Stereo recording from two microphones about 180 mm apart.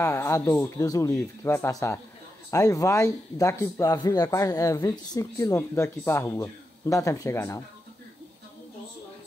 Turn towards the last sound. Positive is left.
turn(degrees=15)  # may be behind; listen again after turning